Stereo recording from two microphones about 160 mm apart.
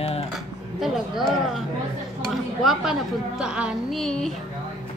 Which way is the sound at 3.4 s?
5° right (ahead or behind).